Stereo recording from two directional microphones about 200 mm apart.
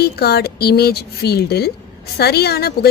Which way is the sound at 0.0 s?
50° left (ahead or behind).